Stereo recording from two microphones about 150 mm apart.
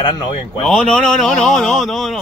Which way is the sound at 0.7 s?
5° left (ahead or behind).